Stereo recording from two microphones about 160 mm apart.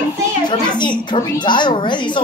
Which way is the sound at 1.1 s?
30° left (ahead or behind).